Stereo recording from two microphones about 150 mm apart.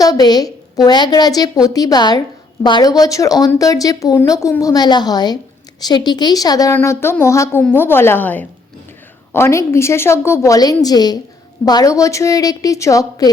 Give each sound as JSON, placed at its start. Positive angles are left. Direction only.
{"t": 0.0, "sound": "a woman's voice", "side_deg": 25}